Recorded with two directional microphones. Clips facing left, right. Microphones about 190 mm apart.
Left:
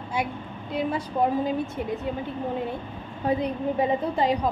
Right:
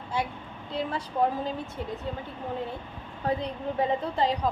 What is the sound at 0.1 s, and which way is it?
A woman's voice, 15° left (ahead or behind).